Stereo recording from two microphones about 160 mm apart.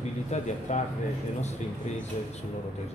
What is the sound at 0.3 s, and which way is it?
Speech, 45° left (ahead or behind).